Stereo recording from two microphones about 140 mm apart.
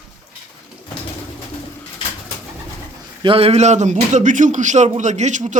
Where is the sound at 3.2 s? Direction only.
40° right (ahead or behind); by 5.6 s 60° right (ahead or behind).